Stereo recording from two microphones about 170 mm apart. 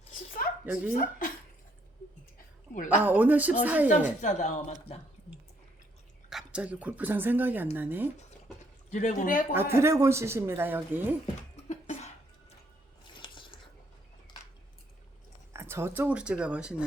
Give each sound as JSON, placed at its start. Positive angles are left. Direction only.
{"t": 0.6, "sound": "speech", "side_deg": -10}
{"t": 2.7, "sound": "speech", "side_deg": 50}
{"t": 3.0, "sound": "speech", "side_deg": -10}
{"t": 4.2, "sound": "speech", "side_deg": 45}
{"t": 6.3, "sound": "speech", "side_deg": -5}
{"t": 8.9, "sound": "speech", "side_deg": 45}
{"t": 9.6, "sound": "speech", "side_deg": -15}
{"t": 11.7, "sound": "cough", "side_deg": 45}
{"t": 13.1, "sound": "a sound", "side_deg": 30}
{"t": 15.5, "sound": "speech", "side_deg": -15}